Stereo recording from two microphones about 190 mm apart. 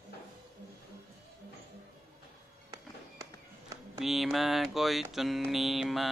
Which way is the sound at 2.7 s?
15° right (ahead or behind).